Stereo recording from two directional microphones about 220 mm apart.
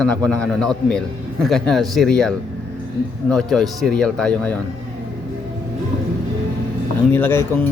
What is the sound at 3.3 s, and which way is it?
A man's voice, centre (ahead or behind).